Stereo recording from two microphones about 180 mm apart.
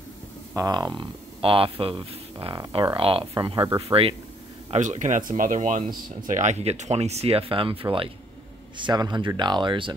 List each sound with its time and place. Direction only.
0.6 s speech: 20° right (ahead or behind)
4.6 s speech: 40° right (ahead or behind); by 9.9 s 25° right (ahead or behind)